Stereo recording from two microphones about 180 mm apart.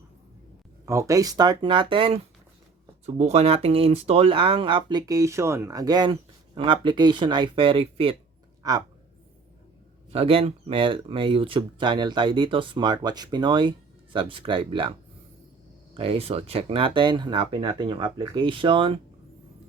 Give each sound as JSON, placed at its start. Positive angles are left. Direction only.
{"t": 0.9, "sound": "speech", "side_deg": -15}
{"t": 8.6, "sound": "speech", "side_deg": -20}
{"t": 10.1, "sound": "speech", "side_deg": -35}
{"t": 16.0, "sound": "speech", "side_deg": -30}